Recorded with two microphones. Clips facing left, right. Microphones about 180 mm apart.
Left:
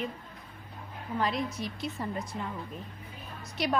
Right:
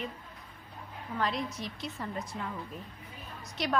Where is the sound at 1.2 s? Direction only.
Centre (ahead or behind).